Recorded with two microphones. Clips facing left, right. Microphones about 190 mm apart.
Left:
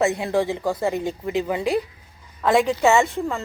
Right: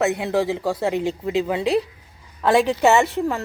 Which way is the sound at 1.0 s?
25° right (ahead or behind).